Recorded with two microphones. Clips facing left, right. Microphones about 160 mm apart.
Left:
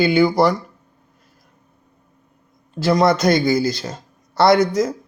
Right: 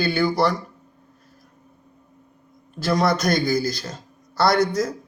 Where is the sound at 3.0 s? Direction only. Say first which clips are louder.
Left 5 dB; 20° left (ahead or behind).